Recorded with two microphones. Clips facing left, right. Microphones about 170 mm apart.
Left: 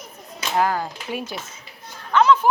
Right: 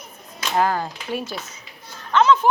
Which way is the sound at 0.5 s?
10° left (ahead or behind).